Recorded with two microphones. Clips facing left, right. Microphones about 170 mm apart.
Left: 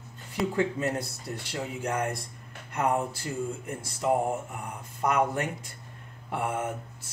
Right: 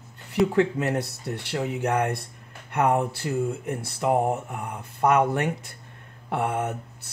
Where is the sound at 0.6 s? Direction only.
70° right (ahead or behind).